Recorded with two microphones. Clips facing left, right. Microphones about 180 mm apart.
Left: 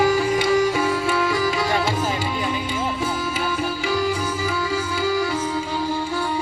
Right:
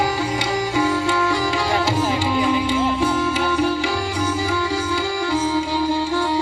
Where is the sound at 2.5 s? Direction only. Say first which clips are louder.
Right 6 dB; 75° right (ahead or behind).